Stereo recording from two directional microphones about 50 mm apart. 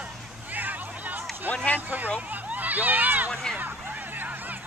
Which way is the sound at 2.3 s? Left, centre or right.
Right.